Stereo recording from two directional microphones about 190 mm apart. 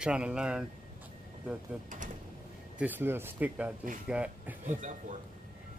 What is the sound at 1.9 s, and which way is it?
Mechanisms, 40° right (ahead or behind).